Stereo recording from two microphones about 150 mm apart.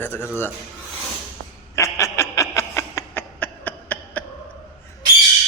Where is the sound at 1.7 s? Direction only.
20° left (ahead or behind).